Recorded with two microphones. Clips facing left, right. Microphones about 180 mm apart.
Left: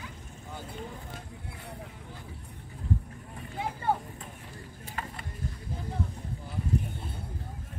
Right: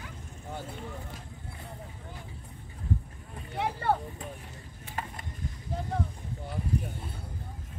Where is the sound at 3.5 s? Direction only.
75° right (ahead or behind).